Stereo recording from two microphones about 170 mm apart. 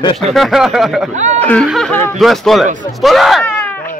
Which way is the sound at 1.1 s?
45° right (ahead or behind).